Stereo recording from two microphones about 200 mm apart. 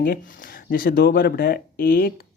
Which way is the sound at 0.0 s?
45° left (ahead or behind).